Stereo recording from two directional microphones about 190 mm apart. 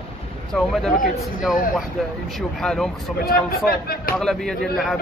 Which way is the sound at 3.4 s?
50° left (ahead or behind).